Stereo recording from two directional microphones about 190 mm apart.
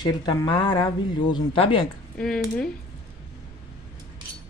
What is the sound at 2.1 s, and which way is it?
Speech, 5° left (ahead or behind).